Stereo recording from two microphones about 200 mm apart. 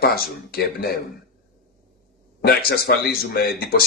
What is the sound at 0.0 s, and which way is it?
A man's voice, 50° left (ahead or behind).